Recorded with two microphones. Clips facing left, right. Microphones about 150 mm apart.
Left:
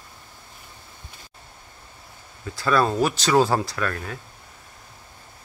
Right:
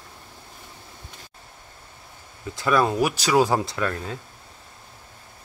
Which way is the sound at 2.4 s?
20° right (ahead or behind).